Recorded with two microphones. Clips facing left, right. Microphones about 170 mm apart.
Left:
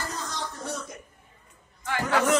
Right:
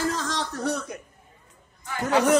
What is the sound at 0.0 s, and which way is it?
Throat clearing, 90° right.